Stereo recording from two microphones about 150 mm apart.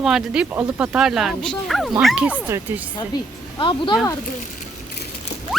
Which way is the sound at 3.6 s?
30° left (ahead or behind).